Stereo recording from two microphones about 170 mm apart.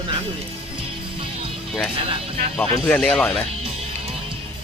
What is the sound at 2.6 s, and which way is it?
Speech, 10° left (ahead or behind).